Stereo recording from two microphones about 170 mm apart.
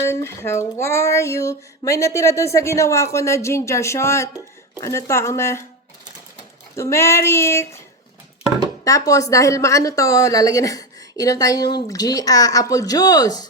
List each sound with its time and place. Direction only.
0.1 s child singing: 15° left (ahead or behind)
6.7 s child singing: 15° left (ahead or behind)
8.8 s speech: 20° left (ahead or behind)